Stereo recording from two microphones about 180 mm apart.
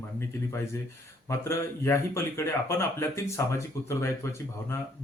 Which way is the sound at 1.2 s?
15° left (ahead or behind).